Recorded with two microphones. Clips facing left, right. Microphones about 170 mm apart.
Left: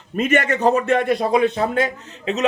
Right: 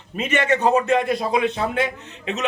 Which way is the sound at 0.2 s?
45° left (ahead or behind).